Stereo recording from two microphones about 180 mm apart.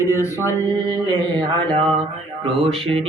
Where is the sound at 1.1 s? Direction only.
25° right (ahead or behind).